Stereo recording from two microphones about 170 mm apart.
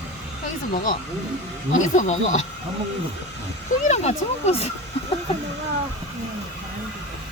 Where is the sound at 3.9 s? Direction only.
40° left (ahead or behind).